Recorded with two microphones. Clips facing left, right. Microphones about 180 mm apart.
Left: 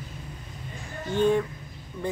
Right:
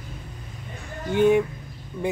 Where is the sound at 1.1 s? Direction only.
15° right (ahead or behind).